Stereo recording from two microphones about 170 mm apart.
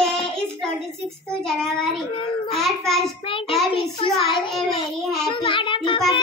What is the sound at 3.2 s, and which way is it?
Child singing, 30° left (ahead or behind).